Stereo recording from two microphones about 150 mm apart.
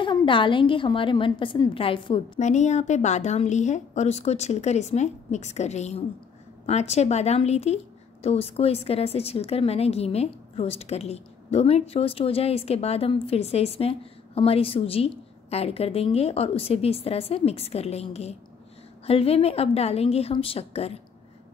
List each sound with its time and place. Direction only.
0.0 s a woman's voice: 30° left (ahead or behind)
2.4 s a woman's voice: 50° left (ahead or behind)